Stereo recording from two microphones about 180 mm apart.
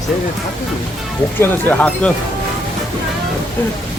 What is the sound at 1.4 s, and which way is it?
Speech, 10° left (ahead or behind).